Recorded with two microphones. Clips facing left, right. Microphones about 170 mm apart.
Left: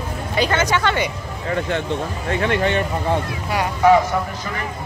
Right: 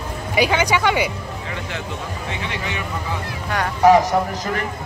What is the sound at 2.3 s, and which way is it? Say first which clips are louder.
Speech: left 11 dB; 55° left (ahead or behind).